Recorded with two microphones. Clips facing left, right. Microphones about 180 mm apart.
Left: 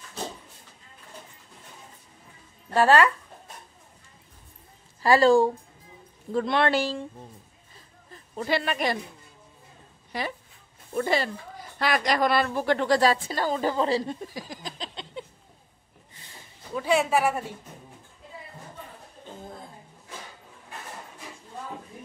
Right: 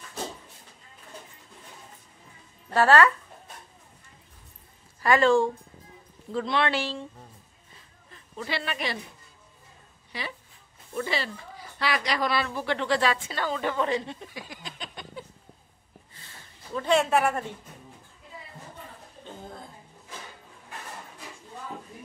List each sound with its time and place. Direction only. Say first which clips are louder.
2.7 s a woman's voice: even; 15° left (ahead or behind)
5.0 s speech: left 3 dB; 35° left (ahead or behind)
6.3 s speech: left 3 dB; 50° left (ahead or behind)
8.1 s speech: left 6 dB; 40° left (ahead or behind)
10.1 s speech: left 5 dB; 45° left (ahead or behind)
15.2 s a sound: left 4 dB; 25° left (ahead or behind)
16.2 s a sound: left 3 dB; 10° left (ahead or behind)